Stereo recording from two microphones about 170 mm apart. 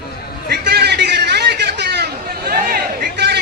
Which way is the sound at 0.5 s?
70° right (ahead or behind).